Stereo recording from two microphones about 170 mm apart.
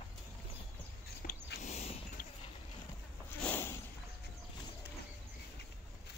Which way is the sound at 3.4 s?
10° left (ahead or behind).